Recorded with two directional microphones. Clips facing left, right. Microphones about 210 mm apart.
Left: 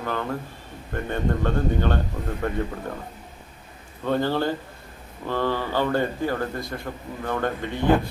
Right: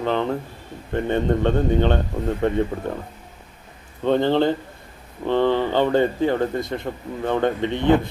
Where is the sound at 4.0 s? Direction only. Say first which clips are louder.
Right 5 dB; 20° right (ahead or behind).